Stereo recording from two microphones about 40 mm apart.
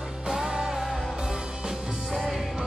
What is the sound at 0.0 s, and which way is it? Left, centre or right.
Music, centre.